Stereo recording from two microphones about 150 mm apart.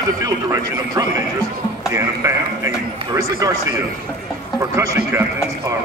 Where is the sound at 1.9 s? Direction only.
20° right (ahead or behind).